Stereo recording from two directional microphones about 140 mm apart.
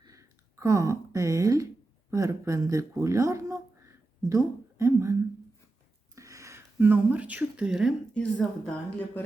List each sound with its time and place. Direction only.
0.0 s a sound: 25° right (ahead or behind)
2.0 s speech: 20° right (ahead or behind)
6.1 s speech: 20° right (ahead or behind); by 7.9 s 5° right (ahead or behind)
8.1 s speech: 5° left (ahead or behind)